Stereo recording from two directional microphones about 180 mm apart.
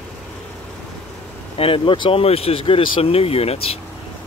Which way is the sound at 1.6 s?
30° left (ahead or behind).